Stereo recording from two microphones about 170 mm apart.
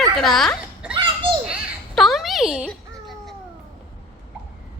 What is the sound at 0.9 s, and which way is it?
Children playing, 30° right (ahead or behind).